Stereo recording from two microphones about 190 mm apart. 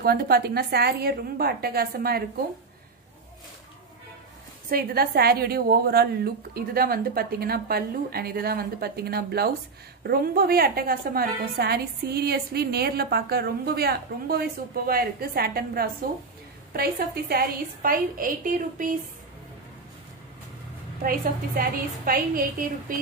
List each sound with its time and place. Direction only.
0.0 s a woman's voice: 55° right (ahead or behind)
4.6 s a woman's voice: 50° right (ahead or behind)
21.5 s a woman's voice: 50° right (ahead or behind)